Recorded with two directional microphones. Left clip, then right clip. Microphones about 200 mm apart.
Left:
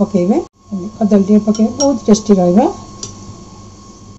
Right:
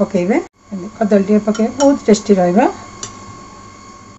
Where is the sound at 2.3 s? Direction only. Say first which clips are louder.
Left 2 dB; 30° right (ahead or behind).